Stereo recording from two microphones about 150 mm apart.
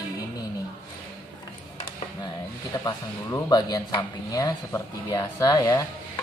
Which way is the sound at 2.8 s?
25° left (ahead or behind).